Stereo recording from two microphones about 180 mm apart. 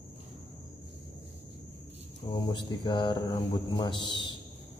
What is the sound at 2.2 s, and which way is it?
Speech, 25° left (ahead or behind).